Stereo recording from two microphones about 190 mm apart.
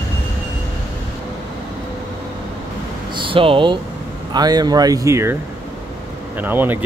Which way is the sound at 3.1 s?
25° right (ahead or behind).